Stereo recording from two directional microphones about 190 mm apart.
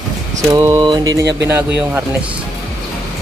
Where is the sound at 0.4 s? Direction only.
15° right (ahead or behind).